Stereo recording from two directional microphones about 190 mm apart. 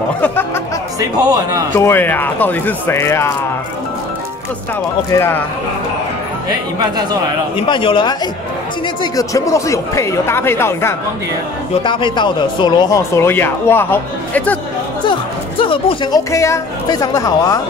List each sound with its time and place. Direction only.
1.2 s speech: 20° right (ahead or behind)
1.7 s a man's voice: 15° left (ahead or behind)
5.1 s a man's voice: 10° left (ahead or behind)
7.5 s a man's voice: 25° left (ahead or behind)
11.8 s a man's voice: 25° left (ahead or behind); by 14.6 s 10° left (ahead or behind)
15.6 s speech: 25° left (ahead or behind)